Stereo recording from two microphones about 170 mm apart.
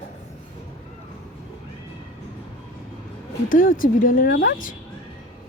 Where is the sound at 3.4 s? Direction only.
55° left (ahead or behind).